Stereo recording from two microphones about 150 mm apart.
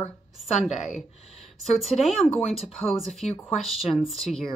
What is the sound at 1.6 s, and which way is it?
Speech, centre (ahead or behind).